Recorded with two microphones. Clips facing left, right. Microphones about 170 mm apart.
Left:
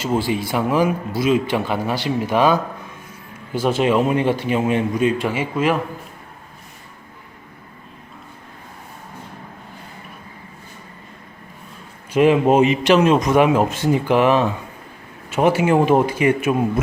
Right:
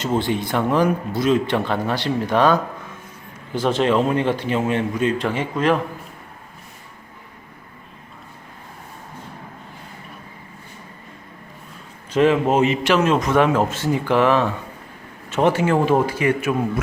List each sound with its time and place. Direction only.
0.0 s a man's voice: 5° left (ahead or behind)
12.1 s a man's voice: 15° left (ahead or behind)